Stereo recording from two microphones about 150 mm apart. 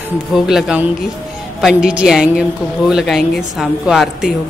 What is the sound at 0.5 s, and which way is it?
A woman's voice, 5° right (ahead or behind).